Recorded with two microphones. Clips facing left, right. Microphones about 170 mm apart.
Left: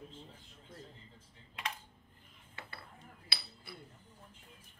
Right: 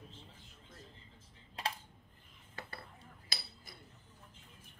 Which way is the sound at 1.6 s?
35° right (ahead or behind).